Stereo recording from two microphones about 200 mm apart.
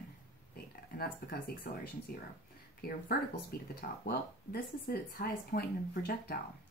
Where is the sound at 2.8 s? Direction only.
50° left (ahead or behind).